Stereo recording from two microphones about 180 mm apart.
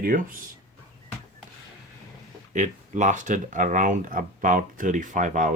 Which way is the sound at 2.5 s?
45° right (ahead or behind).